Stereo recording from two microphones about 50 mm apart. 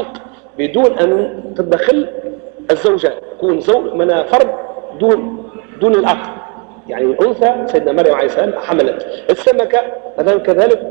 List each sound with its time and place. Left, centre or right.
0.6 s a man's voice: centre